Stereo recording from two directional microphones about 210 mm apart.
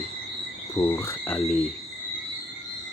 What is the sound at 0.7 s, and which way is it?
Speech, 10° left (ahead or behind).